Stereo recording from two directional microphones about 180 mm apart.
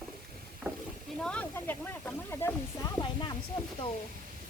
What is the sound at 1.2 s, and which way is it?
Snake, 5° left (ahead or behind).